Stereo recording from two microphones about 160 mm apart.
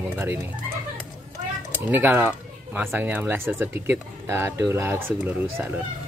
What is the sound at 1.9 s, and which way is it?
Speech, 10° right (ahead or behind).